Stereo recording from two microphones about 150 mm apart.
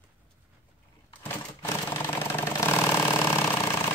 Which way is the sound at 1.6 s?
15° left (ahead or behind).